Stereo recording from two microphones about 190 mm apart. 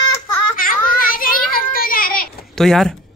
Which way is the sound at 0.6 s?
50° left (ahead or behind).